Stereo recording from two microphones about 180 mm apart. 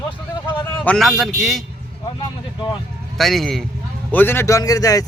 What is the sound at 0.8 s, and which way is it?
Speech, 5° left (ahead or behind).